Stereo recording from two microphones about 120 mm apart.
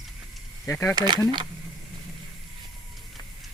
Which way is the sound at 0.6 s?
20° left (ahead or behind).